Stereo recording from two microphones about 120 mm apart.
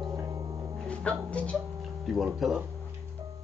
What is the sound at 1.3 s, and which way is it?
Music, 10° left (ahead or behind).